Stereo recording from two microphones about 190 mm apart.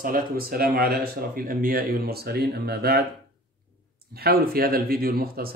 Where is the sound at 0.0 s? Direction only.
50° right (ahead or behind).